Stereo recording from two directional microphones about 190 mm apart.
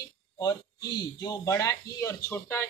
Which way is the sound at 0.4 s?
20° left (ahead or behind).